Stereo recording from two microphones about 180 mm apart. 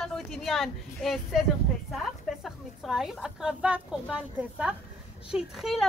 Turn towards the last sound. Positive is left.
turn(degrees=0)  # may be behind; listen again after turning